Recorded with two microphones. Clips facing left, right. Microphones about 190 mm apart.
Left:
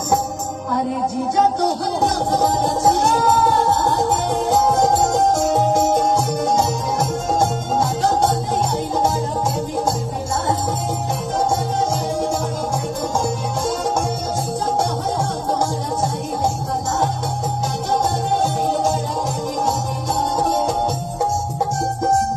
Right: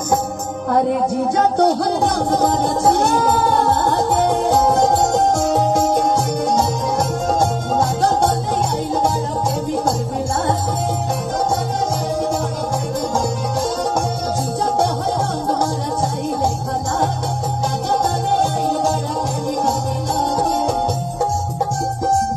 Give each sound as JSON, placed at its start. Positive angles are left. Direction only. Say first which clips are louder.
{"t": 0.7, "sound": "speech", "louder": "right 5 dB", "side_deg": -60}
{"t": 2.6, "sound": "music", "louder": "right 1 dB", "side_deg": -60}